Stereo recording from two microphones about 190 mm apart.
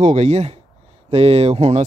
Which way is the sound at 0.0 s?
35° right (ahead or behind).